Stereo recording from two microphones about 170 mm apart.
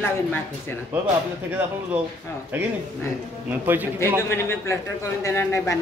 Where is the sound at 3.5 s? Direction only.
10° right (ahead or behind).